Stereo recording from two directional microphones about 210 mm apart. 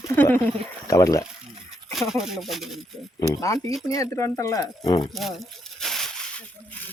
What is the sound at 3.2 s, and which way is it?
Speech, 15° left (ahead or behind).